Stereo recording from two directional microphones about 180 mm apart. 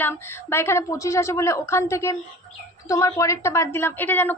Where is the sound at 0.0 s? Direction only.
15° left (ahead or behind).